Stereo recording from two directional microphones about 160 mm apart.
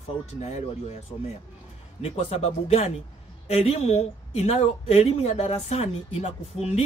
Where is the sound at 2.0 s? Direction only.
35° left (ahead or behind).